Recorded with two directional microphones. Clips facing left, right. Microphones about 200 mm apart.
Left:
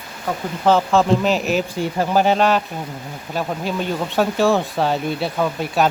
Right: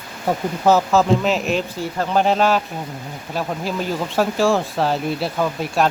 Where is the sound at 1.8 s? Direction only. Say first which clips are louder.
Left 3 dB; 15° left (ahead or behind).